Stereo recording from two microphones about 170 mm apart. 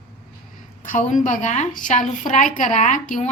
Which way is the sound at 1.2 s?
45° left (ahead or behind).